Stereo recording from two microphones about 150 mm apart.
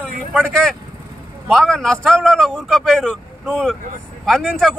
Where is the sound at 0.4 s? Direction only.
5° left (ahead or behind).